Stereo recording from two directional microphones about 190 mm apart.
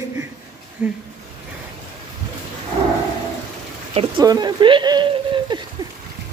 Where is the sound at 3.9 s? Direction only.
30° right (ahead or behind).